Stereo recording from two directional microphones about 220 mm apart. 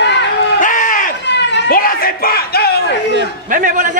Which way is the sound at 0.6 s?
35° left (ahead or behind).